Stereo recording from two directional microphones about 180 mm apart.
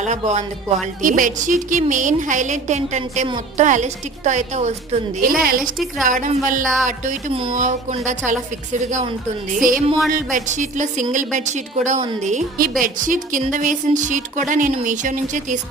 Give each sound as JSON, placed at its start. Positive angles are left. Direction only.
{"t": 0.0, "sound": "a woman's voice", "side_deg": -40}
{"t": 5.2, "sound": "a woman's voice", "side_deg": -55}